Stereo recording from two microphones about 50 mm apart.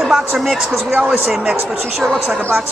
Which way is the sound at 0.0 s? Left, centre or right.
Centre.